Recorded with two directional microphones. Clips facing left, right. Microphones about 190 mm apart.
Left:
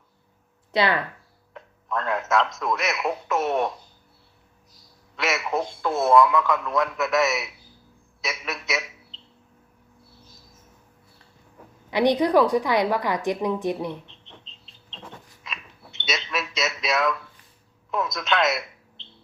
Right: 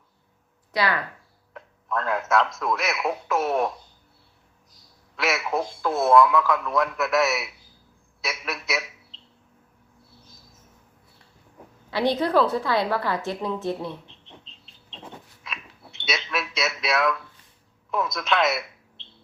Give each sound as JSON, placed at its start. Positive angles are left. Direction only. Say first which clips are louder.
{"t": 0.7, "sound": "speech", "louder": "left 3 dB", "side_deg": 25}
{"t": 1.5, "sound": "a man's voice", "louder": "even", "side_deg": 0}
{"t": 5.1, "sound": "a man's voice", "louder": "even", "side_deg": 0}
{"t": 11.9, "sound": "a woman's voice", "louder": "left 3 dB", "side_deg": 15}
{"t": 14.1, "sound": "bird", "louder": "even", "side_deg": 0}
{"t": 15.4, "sound": "a sound", "louder": "even", "side_deg": 0}
{"t": 17.9, "sound": "speech", "louder": "even", "side_deg": 0}